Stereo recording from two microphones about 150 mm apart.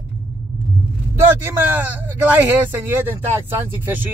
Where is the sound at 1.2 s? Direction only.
15° right (ahead or behind).